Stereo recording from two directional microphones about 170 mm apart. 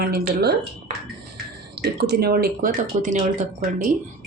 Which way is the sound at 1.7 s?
70° right (ahead or behind).